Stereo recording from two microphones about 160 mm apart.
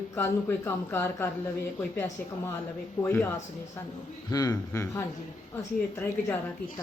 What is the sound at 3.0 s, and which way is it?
Speech, 15° left (ahead or behind).